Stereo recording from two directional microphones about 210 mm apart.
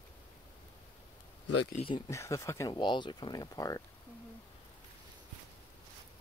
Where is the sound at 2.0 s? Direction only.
15° left (ahead or behind).